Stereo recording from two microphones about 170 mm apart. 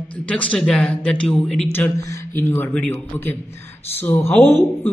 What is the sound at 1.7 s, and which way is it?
A man's voice, 15° left (ahead or behind).